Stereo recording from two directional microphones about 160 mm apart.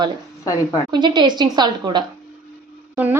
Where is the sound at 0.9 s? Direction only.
30° right (ahead or behind).